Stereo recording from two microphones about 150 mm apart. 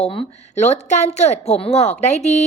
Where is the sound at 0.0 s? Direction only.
35° left (ahead or behind).